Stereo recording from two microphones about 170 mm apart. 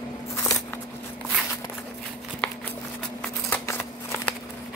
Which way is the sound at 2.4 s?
5° left (ahead or behind).